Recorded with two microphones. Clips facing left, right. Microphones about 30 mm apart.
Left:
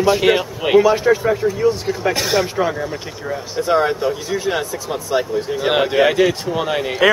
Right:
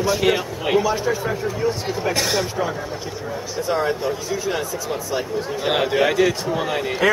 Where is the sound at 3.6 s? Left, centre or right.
Left.